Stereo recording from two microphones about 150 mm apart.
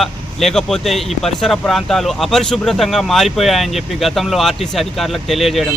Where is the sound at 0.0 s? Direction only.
Centre (ahead or behind).